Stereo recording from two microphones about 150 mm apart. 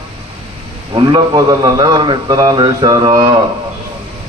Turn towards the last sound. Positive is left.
turn(degrees=-25)  # may be behind; listen again after turning